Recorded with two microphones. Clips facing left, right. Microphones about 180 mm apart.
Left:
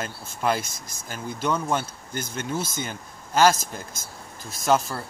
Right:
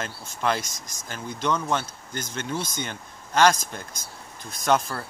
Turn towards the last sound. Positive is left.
turn(degrees=0)  # may be behind; listen again after turning